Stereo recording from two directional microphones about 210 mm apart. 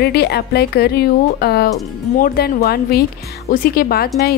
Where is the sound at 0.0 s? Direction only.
50° left (ahead or behind).